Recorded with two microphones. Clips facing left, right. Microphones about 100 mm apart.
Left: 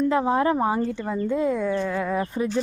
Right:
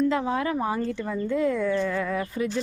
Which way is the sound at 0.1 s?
30° left (ahead or behind).